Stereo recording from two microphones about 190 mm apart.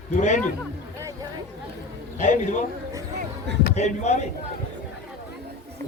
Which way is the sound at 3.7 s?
35° left (ahead or behind).